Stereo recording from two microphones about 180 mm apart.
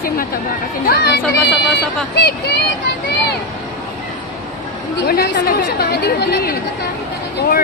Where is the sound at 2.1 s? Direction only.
65° left (ahead or behind).